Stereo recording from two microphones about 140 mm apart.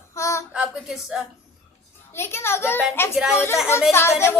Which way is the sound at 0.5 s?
5° right (ahead or behind).